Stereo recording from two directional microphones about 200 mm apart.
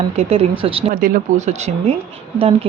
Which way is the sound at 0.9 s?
45° right (ahead or behind).